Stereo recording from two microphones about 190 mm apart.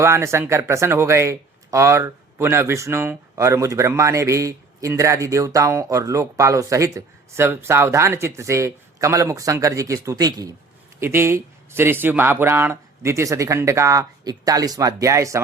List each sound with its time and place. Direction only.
0.0 s speech: 15° right (ahead or behind)